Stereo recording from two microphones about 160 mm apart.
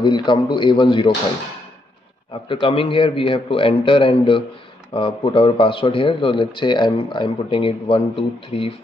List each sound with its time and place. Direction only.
0.0 s speech: 30° left (ahead or behind)
2.4 s speech: 30° left (ahead or behind)